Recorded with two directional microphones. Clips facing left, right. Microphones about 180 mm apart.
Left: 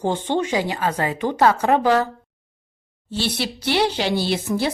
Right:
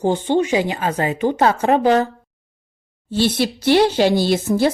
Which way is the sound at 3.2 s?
45° right (ahead or behind).